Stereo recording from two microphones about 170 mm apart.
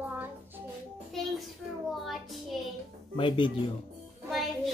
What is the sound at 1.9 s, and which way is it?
Child singing, centre (ahead or behind).